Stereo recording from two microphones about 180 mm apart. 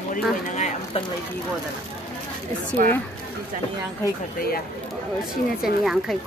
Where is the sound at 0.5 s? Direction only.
40° left (ahead or behind).